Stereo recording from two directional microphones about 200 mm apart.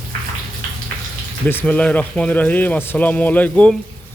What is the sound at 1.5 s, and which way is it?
Speech, 10° left (ahead or behind).